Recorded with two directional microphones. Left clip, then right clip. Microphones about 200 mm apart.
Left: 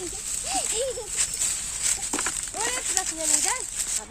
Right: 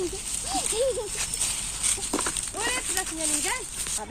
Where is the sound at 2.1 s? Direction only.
5° left (ahead or behind).